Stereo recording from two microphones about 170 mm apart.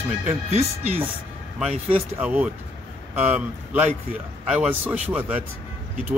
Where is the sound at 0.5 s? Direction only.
40° right (ahead or behind).